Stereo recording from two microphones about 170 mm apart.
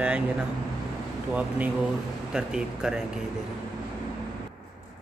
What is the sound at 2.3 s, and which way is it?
Speech, 5° right (ahead or behind).